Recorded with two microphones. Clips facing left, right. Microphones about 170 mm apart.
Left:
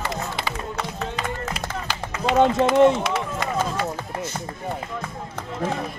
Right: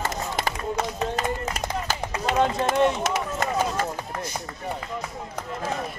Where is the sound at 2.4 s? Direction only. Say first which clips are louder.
Left 6 dB; 25° left (ahead or behind).